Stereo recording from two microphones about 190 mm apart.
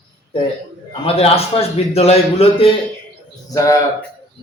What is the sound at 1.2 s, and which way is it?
A man's voice, 30° left (ahead or behind).